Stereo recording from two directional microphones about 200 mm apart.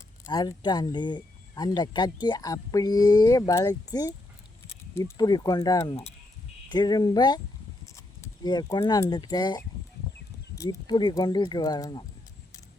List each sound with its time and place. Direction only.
0.3 s speech: 20° left (ahead or behind)